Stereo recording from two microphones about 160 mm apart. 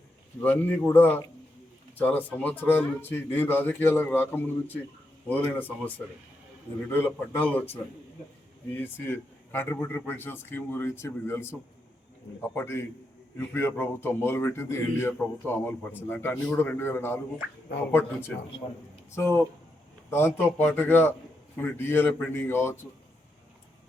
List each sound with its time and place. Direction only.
0.4 s speech: 10° left (ahead or behind)
6.9 s speech: 10° left (ahead or behind)
19.1 s speech: 15° left (ahead or behind)